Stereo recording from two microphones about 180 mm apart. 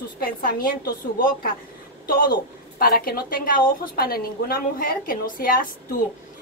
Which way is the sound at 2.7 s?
55° left (ahead or behind).